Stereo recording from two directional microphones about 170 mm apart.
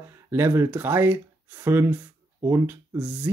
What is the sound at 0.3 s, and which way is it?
Speech, 15° right (ahead or behind).